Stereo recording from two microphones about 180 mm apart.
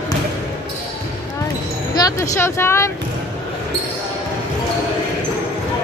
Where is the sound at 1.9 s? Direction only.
20° left (ahead or behind).